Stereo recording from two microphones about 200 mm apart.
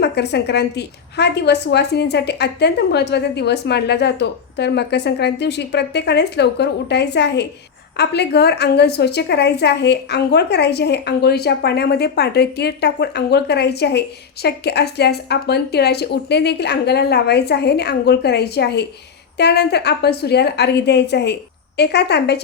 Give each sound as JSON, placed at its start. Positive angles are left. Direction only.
{"t": 0.0, "sound": "a woman's voice", "side_deg": 55}